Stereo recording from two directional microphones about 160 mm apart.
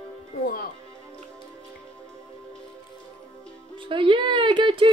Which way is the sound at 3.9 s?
30° right (ahead or behind).